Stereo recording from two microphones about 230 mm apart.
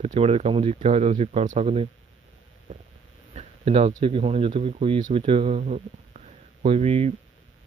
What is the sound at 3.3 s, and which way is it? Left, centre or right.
Speech, right.